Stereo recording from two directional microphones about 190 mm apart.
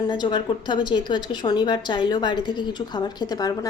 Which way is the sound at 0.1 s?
25° left (ahead or behind).